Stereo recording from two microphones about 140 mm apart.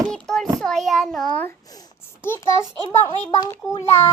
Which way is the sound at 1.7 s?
20° left (ahead or behind).